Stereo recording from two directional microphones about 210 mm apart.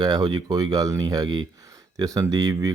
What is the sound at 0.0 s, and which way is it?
Speech, 20° right (ahead or behind).